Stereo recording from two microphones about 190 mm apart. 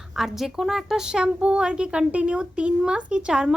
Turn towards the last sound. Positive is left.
turn(degrees=-5)  # may be behind; listen again after turning